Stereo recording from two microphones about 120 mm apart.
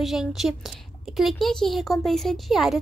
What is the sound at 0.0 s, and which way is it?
Speech, 5° right (ahead or behind).